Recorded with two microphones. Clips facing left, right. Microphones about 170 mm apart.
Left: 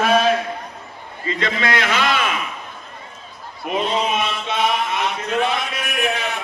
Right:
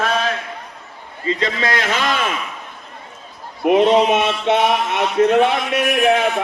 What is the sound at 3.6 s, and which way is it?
Speech, 70° right (ahead or behind).